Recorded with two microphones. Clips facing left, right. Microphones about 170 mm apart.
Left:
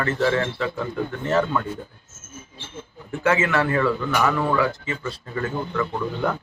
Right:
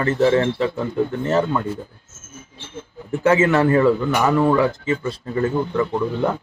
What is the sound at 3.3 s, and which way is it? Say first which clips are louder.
Speech: right 5 dB; 30° right (ahead or behind).